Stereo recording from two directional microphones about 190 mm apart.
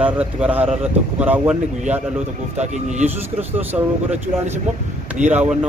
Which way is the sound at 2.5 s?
35° right (ahead or behind).